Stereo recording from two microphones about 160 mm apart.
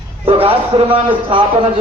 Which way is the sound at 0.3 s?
35° right (ahead or behind).